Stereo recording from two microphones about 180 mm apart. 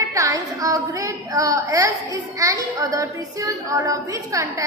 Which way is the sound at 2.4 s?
20° right (ahead or behind).